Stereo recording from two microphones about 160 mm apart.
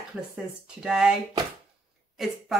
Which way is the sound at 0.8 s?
5° right (ahead or behind).